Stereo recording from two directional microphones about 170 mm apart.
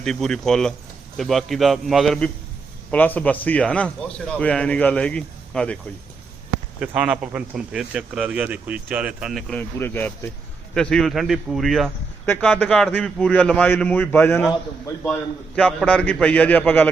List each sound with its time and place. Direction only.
0.0 s a man's voice: 5° left (ahead or behind)
6.7 s speech: 5° right (ahead or behind)
12.2 s a man's voice: 10° left (ahead or behind)
15.5 s a man's voice: 5° left (ahead or behind)